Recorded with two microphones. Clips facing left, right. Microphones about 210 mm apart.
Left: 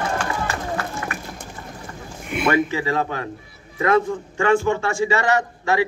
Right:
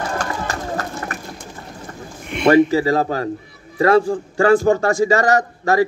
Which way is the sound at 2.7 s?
35° right (ahead or behind).